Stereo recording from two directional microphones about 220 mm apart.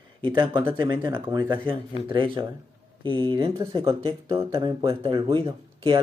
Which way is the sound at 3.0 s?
20° right (ahead or behind).